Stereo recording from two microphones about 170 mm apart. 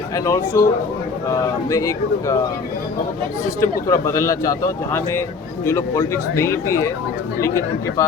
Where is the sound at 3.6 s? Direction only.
20° left (ahead or behind).